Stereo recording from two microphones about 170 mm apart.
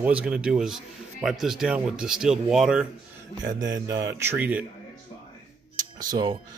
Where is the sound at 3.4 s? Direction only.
25° right (ahead or behind).